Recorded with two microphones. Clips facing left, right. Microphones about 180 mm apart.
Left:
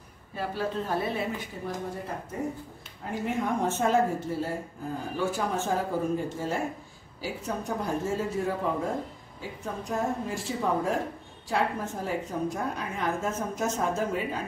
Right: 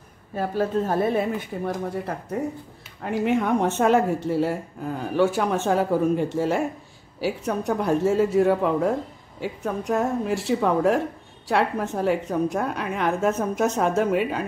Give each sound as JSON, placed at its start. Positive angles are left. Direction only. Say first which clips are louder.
{"t": 0.4, "sound": "a woman's voice", "louder": "right 7 dB", "side_deg": -45}
{"t": 1.5, "sound": "a woman's voice", "louder": "right 8 dB", "side_deg": -70}
{"t": 3.0, "sound": "a woman's voice", "louder": "right 8 dB", "side_deg": -75}